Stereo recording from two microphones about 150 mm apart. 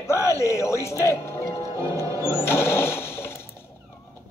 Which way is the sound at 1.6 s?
25° right (ahead or behind).